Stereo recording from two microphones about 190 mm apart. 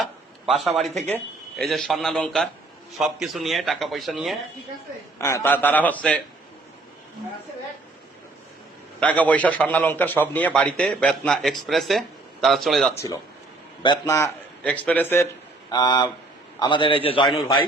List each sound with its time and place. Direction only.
0.0 s a sound: centre (ahead or behind)
1.1 s speech: centre (ahead or behind)
5.2 s a man's voice: 15° left (ahead or behind)
9.0 s a man's voice: 5° left (ahead or behind)
13.8 s a man's voice: 20° left (ahead or behind)
15.7 s a man's voice: 20° left (ahead or behind)